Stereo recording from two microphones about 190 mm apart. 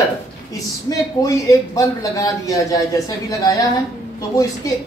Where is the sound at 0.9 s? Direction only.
20° left (ahead or behind).